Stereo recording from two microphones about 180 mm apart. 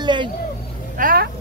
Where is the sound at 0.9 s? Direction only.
55° right (ahead or behind).